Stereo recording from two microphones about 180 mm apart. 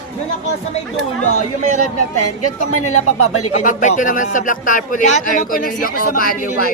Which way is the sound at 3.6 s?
45° left (ahead or behind).